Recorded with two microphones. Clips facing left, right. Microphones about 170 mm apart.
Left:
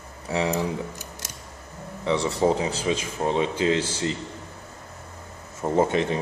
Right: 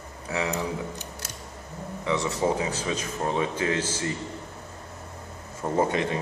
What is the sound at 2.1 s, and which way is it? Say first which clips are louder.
Speech: left 3 dB; 30° left (ahead or behind).